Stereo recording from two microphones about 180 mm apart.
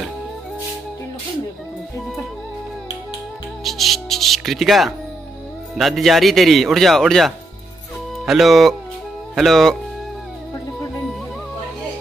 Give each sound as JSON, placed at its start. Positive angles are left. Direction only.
{"t": 3.6, "sound": "speech", "side_deg": 0}